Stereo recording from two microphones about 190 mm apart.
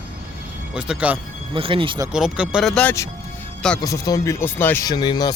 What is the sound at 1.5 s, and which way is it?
Speech, 30° right (ahead or behind).